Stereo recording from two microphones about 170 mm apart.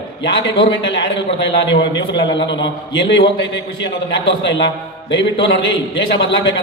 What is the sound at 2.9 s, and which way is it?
Speech, 90° left.